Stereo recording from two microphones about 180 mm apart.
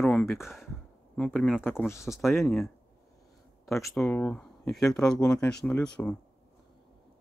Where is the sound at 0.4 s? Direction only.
Centre (ahead or behind); by 2.1 s 15° left (ahead or behind).